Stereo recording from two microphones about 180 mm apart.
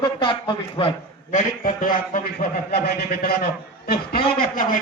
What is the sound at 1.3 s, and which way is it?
Speech, 45° left (ahead or behind).